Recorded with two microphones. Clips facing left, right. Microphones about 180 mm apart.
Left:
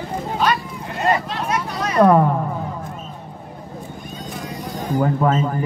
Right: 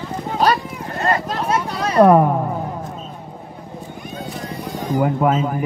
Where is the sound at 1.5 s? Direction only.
30° right (ahead or behind).